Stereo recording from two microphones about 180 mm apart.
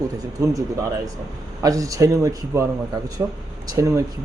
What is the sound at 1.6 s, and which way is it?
A man's voice, 20° right (ahead or behind).